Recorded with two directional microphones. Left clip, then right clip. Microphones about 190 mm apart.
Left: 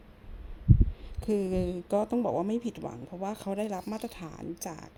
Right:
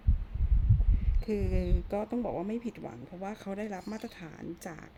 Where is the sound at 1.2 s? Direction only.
15° left (ahead or behind).